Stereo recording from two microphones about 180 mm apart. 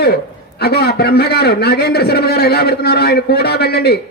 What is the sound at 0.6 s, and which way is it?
A man's voice, 60° left (ahead or behind).